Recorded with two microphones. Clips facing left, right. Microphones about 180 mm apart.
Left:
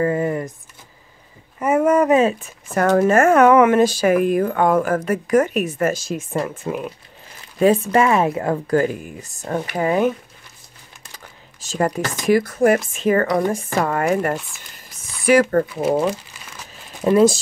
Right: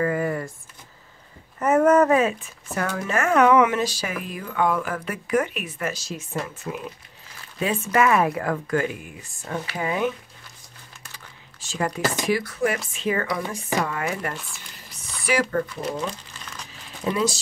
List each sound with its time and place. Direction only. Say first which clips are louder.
0.0 s a sound: left 4 dB; 25° left (ahead or behind)
1.6 s a sound: left 1 dB; 10° left (ahead or behind)
2.7 s speech: left 11 dB; 50° left (ahead or behind)
7.5 s speech: left 7 dB; 40° left (ahead or behind)
11.6 s speech: left 4 dB; 40° left (ahead or behind)
15.5 s speech: left 8 dB; 55° left (ahead or behind)